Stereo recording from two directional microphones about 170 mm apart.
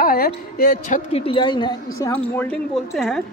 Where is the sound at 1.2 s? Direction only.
30° left (ahead or behind).